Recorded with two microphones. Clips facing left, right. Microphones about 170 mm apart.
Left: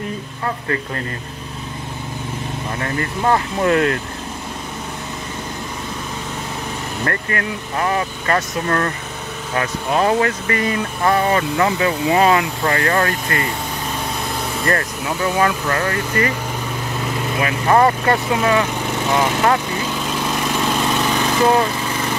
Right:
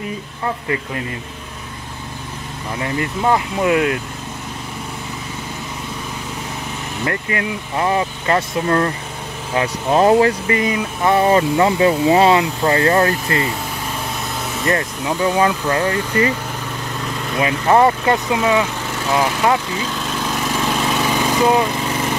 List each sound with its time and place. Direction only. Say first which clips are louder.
3.2 s speech: even; 5° right (ahead or behind)
7.1 s speech: right 2 dB; 15° right (ahead or behind)
10.8 s speech: right 1 dB; 5° right (ahead or behind)
11.1 s speech: right 6 dB; 25° right (ahead or behind)
14.7 s speech: right 2 dB; 15° right (ahead or behind)
17.4 s speech: right 2 dB; 20° right (ahead or behind)
19.9 s vehicle: left 1 dB; 10° left (ahead or behind); by 21.7 s 5° right (ahead or behind)